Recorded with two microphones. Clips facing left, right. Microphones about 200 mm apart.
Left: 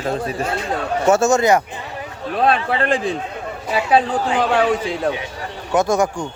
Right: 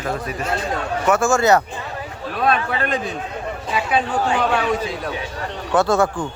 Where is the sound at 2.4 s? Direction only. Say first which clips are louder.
Left 3 dB; 30° left (ahead or behind).